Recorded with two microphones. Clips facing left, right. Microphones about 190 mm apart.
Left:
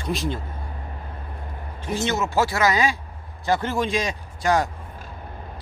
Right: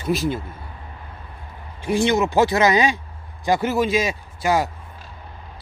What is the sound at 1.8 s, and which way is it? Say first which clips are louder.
Speech: right 6 dB; 15° right (ahead or behind).